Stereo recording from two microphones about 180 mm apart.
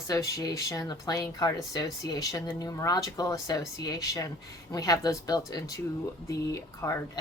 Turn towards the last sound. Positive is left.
turn(degrees=15)  # may be behind; listen again after turning